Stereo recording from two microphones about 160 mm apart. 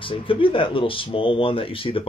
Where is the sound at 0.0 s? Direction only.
35° left (ahead or behind).